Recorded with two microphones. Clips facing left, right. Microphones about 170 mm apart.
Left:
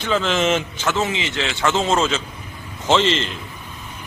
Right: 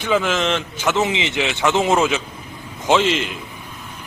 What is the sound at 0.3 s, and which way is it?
Speech, 5° left (ahead or behind).